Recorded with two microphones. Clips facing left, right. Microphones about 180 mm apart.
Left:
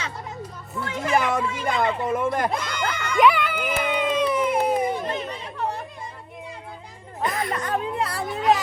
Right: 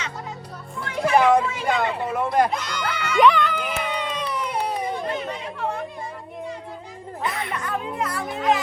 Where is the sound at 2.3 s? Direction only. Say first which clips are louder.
Right 4 dB; 50° left (ahead or behind).